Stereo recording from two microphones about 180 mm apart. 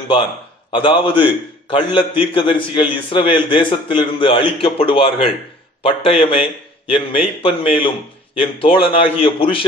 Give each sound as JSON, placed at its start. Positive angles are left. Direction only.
{"t": 0.7, "sound": "a man's voice", "side_deg": 25}